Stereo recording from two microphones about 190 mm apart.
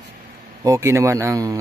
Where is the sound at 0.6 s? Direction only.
15° right (ahead or behind).